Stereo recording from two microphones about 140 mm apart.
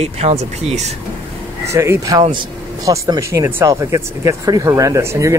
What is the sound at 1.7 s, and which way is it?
Speech, 20° right (ahead or behind).